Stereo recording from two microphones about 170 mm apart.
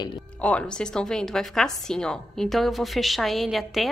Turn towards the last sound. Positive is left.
turn(degrees=0)  # may be behind; listen again after turning